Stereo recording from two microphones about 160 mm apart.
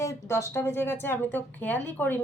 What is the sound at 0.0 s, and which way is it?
Speech, 15° left (ahead or behind).